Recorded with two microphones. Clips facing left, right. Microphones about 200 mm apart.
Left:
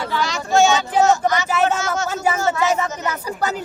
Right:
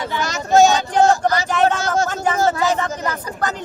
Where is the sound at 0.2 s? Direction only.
45° right (ahead or behind).